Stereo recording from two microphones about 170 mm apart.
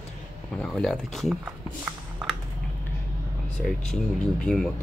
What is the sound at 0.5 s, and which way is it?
Speech, 5° left (ahead or behind).